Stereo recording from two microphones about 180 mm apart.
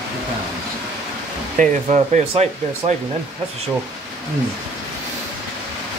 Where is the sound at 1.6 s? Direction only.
40° right (ahead or behind).